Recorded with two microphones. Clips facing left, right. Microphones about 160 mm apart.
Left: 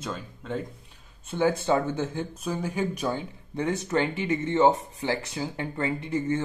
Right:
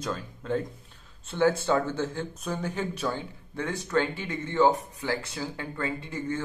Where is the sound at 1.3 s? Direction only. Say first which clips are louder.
Even; 15° left (ahead or behind).